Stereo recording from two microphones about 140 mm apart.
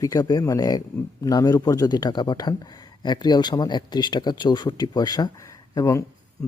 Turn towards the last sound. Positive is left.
turn(degrees=20)  # may be behind; listen again after turning